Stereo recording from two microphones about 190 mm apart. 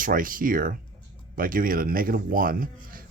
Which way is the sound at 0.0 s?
45° right (ahead or behind).